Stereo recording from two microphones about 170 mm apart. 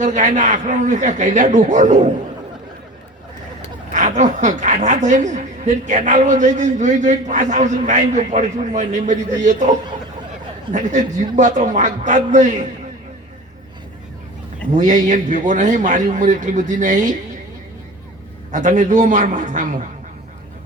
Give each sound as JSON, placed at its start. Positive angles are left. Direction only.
{"t": 0.0, "sound": "a woman's voice", "side_deg": -45}
{"t": 3.9, "sound": "a woman's voice", "side_deg": -45}
{"t": 14.8, "sound": "a woman's voice", "side_deg": -45}
{"t": 18.5, "sound": "a woman's voice", "side_deg": -45}